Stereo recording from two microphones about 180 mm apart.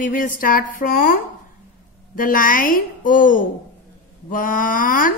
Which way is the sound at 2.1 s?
50° left (ahead or behind).